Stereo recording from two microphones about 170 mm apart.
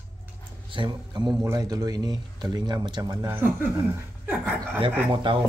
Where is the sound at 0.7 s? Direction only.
30° right (ahead or behind).